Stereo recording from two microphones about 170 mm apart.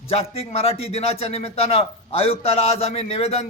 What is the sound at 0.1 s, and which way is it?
A man's voice, 35° left (ahead or behind).